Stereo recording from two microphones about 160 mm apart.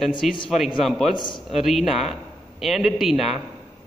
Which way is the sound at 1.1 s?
30° left (ahead or behind).